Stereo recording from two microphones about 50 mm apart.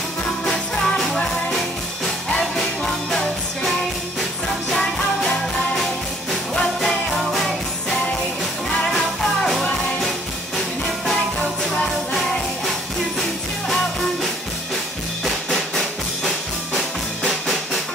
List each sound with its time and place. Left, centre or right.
0.5 s music: centre
2.0 s music: centre
6.5 s music: centre
15.2 s music: centre